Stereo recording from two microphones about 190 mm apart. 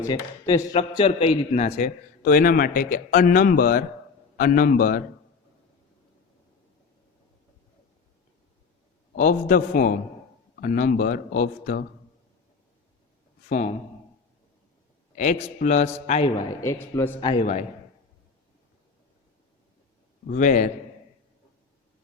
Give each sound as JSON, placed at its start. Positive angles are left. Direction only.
{"t": 0.1, "sound": "a man's voice", "side_deg": 20}
{"t": 9.1, "sound": "a man's voice", "side_deg": 45}
{"t": 13.5, "sound": "a man's voice", "side_deg": 40}
{"t": 15.1, "sound": "a man's voice", "side_deg": 40}
{"t": 16.6, "sound": "a man's voice", "side_deg": 15}
{"t": 17.2, "sound": "a man's voice", "side_deg": 25}
{"t": 17.4, "sound": "a man's voice", "side_deg": 35}
{"t": 20.3, "sound": "a man's voice", "side_deg": 40}